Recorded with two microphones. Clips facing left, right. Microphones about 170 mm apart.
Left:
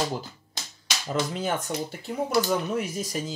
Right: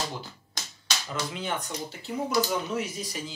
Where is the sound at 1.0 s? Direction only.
40° left (ahead or behind).